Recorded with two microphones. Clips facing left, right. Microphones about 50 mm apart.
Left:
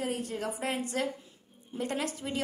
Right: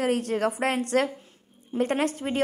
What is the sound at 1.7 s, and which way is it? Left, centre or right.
Speech, right.